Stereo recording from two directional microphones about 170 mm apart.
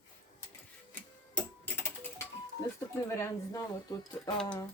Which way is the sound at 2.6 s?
20° left (ahead or behind).